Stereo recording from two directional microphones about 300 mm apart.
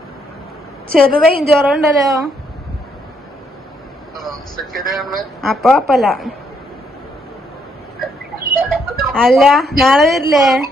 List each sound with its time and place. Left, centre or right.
1.0 s a woman's voice: right
1.5 s a man's voice: centre
4.2 s vehicle: centre
4.8 s a man's voice: centre
8.7 s a sound: centre
9.7 s a man's voice: centre